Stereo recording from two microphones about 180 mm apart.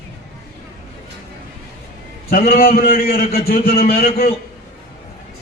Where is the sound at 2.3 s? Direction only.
55° left (ahead or behind).